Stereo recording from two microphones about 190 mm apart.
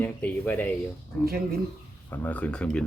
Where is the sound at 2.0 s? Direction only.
10° left (ahead or behind).